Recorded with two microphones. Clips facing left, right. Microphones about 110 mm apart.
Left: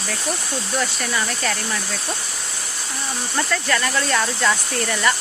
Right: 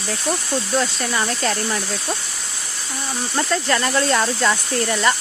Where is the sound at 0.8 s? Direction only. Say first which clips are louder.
Left 1 dB; 25° right (ahead or behind).